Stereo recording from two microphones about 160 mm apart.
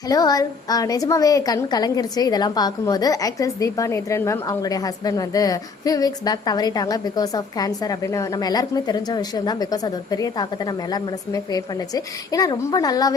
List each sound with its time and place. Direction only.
0.1 s a woman's voice: 25° left (ahead or behind)